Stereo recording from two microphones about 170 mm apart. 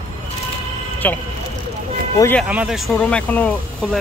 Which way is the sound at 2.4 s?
5° right (ahead or behind).